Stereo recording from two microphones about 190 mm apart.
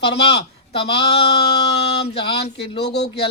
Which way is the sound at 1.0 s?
60° left (ahead or behind).